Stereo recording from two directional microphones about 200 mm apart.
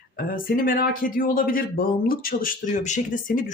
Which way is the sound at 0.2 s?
45° left (ahead or behind).